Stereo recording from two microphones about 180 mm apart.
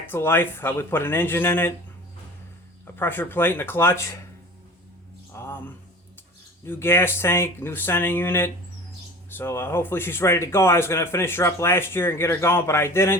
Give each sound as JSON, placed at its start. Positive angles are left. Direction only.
{"t": 0.0, "sound": "speech", "side_deg": 10}
{"t": 2.8, "sound": "speech", "side_deg": 10}
{"t": 5.3, "sound": "a sound", "side_deg": 15}
{"t": 6.7, "sound": "speech", "side_deg": 15}